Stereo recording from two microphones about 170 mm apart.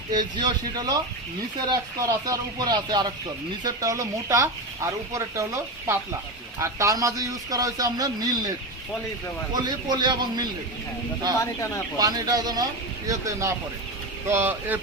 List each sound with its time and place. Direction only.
0.1 s a man's voice: 25° right (ahead or behind)
9.5 s a man's voice: 25° right (ahead or behind)
11.9 s a man's voice: 20° right (ahead or behind)